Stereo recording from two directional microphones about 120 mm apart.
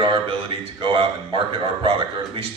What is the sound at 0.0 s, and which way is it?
A man's voice, 45° right (ahead or behind).